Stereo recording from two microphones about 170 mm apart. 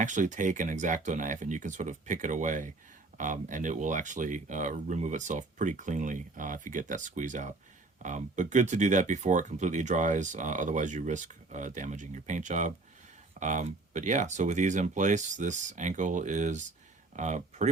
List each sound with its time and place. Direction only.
0.0 s speech: 45° right (ahead or behind)